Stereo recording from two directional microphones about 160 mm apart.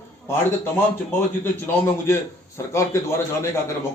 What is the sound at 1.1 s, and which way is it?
A man's voice, 15° left (ahead or behind).